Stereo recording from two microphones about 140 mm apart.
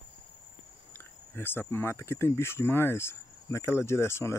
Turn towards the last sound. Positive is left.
turn(degrees=20)  # may be behind; listen again after turning